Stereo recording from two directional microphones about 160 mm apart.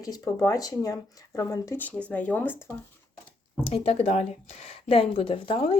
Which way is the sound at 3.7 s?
40° left (ahead or behind).